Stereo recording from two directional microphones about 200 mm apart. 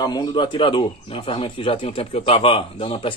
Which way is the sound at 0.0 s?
20° left (ahead or behind).